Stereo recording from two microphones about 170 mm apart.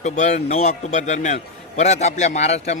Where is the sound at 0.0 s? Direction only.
45° left (ahead or behind).